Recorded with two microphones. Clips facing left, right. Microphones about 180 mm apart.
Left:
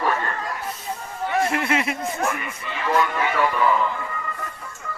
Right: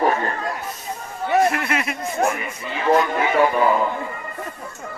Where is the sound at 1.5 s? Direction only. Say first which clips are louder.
Even; 25° left (ahead or behind).